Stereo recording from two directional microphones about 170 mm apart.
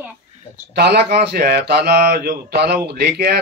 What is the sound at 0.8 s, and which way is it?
Speech, 75° right (ahead or behind).